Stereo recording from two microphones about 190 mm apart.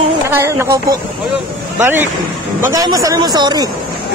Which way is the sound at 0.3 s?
15° right (ahead or behind).